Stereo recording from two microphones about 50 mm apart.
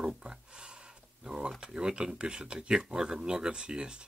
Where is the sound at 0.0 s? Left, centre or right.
Centre.